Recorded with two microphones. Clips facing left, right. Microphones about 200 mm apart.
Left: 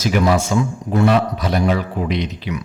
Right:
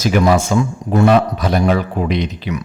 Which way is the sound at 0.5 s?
70° right (ahead or behind).